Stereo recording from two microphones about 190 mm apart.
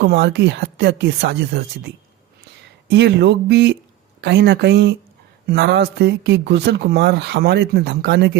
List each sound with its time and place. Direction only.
0.0 s speech: 60° right (ahead or behind)
2.9 s speech: 65° right (ahead or behind)